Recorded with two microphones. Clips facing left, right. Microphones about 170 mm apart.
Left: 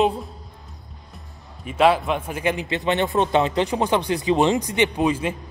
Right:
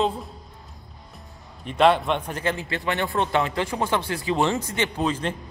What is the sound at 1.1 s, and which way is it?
A man's voice, 5° left (ahead or behind).